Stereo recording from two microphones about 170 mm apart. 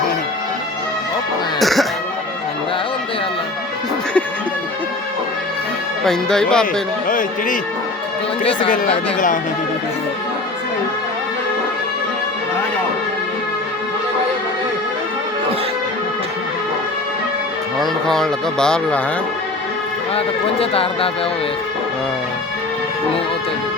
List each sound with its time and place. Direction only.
1.5 s music: centre (ahead or behind)
6.1 s speech: 5° left (ahead or behind)
7.1 s speech: 50° left (ahead or behind)
17.7 s speech: centre (ahead or behind)
20.1 s speech: 35° left (ahead or behind)